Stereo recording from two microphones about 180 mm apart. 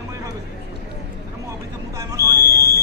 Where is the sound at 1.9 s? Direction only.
20° right (ahead or behind).